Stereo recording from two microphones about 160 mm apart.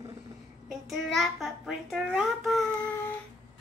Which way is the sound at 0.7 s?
Centre (ahead or behind).